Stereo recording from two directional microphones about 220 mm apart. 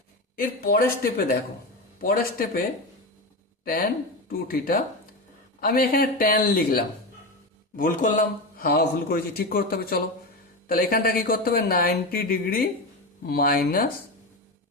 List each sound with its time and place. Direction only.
0.3 s a man's voice: 40° left (ahead or behind)